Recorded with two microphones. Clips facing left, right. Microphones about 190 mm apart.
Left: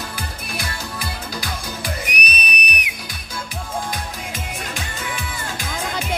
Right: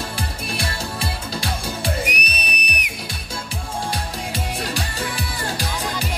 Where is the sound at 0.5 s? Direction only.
30° right (ahead or behind).